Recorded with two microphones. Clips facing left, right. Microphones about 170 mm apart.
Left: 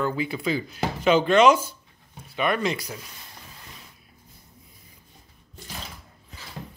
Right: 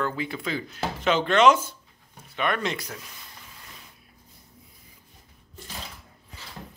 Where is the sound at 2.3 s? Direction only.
5° left (ahead or behind).